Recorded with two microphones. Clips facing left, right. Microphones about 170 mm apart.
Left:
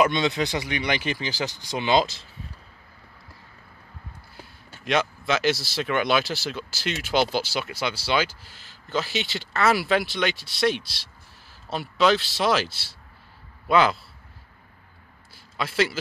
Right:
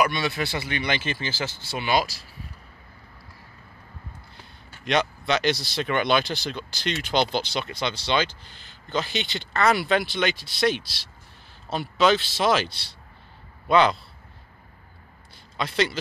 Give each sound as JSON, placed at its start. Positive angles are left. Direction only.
{"t": 0.0, "sound": "speech", "side_deg": 20}
{"t": 4.4, "sound": "a man's voice", "side_deg": 0}
{"t": 15.3, "sound": "a sound", "side_deg": 5}